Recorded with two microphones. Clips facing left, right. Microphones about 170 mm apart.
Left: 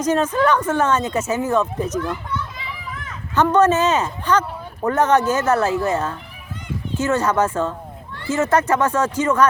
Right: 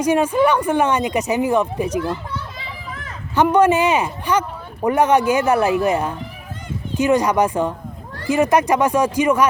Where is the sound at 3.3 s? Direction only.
10° right (ahead or behind).